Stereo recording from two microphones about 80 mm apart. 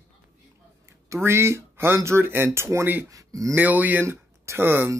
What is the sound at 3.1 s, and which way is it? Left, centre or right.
Speech, right.